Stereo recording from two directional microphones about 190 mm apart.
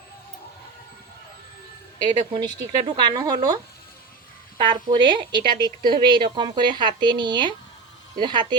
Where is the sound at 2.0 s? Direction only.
25° right (ahead or behind).